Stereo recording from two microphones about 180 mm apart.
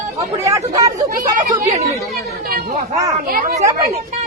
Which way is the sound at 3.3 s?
50° right (ahead or behind).